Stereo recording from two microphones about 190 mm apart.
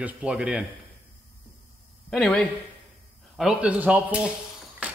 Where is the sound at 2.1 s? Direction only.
5° left (ahead or behind).